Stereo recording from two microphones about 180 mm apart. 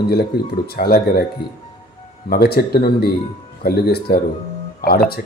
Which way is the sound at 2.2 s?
60° left (ahead or behind).